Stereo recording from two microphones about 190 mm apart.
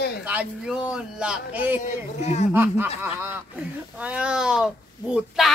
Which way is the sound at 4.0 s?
5° right (ahead or behind).